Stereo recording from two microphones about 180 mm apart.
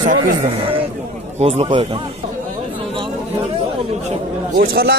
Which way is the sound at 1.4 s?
30° right (ahead or behind).